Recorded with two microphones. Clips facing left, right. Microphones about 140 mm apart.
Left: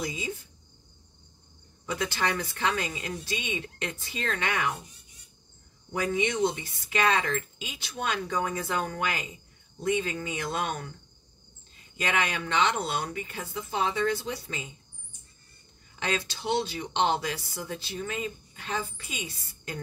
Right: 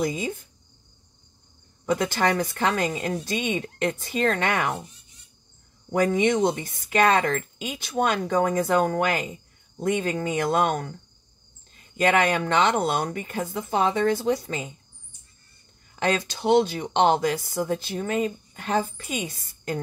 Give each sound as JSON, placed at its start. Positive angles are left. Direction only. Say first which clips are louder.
{"t": 0.0, "sound": "speech", "louder": "right 8 dB", "side_deg": -50}
{"t": 1.9, "sound": "speech", "louder": "right 7 dB", "side_deg": -45}
{"t": 5.9, "sound": "speech", "louder": "right 7 dB", "side_deg": -50}
{"t": 12.0, "sound": "speech", "louder": "right 8 dB", "side_deg": -50}
{"t": 16.0, "sound": "speech", "louder": "right 7 dB", "side_deg": -45}